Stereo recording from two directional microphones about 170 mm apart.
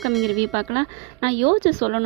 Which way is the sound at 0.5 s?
40° right (ahead or behind).